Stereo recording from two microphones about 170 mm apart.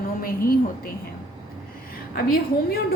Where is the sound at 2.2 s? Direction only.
60° left (ahead or behind).